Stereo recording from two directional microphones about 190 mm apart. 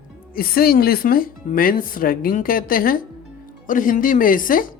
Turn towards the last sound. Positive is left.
turn(degrees=45)  # may be behind; listen again after turning